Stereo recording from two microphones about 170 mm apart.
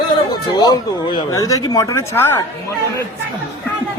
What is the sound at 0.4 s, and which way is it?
Speech, 25° left (ahead or behind).